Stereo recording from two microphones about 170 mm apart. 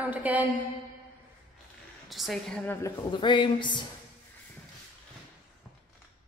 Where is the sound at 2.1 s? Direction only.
Centre (ahead or behind).